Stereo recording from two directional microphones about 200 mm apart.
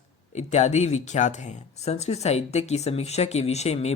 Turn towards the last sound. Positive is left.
turn(degrees=30)  # may be behind; listen again after turning